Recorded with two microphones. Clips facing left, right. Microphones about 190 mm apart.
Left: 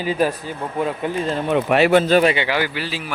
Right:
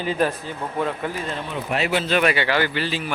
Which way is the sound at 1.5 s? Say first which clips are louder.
Left 10 dB; 65° left (ahead or behind).